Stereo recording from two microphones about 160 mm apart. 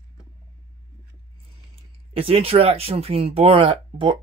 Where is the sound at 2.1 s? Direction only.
35° right (ahead or behind).